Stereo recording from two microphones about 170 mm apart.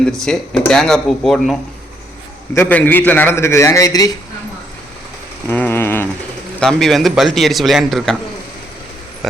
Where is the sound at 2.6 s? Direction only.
10° left (ahead or behind).